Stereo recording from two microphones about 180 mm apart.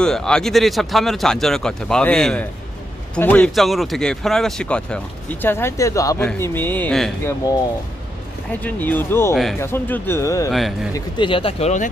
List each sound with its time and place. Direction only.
0.0 s speech: 5° left (ahead or behind)
8.6 s speech: 10° left (ahead or behind)
9.3 s speech: centre (ahead or behind)
9.6 s speech: 10° left (ahead or behind)
10.5 s speech: centre (ahead or behind)
11.1 s speech: 30° left (ahead or behind)